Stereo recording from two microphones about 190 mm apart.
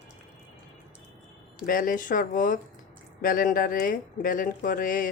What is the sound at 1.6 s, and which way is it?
Speech, 45° left (ahead or behind).